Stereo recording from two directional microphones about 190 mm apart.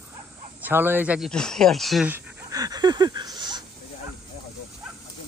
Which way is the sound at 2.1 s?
15° right (ahead or behind).